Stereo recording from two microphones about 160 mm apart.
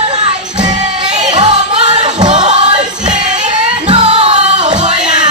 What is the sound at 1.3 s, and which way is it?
Music, 30° right (ahead or behind).